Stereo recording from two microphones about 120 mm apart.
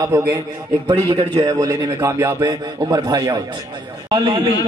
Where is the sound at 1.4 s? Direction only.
30° right (ahead or behind).